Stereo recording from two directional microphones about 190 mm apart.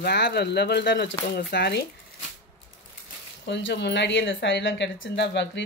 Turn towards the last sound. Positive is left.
turn(degrees=65)  # may be behind; listen again after turning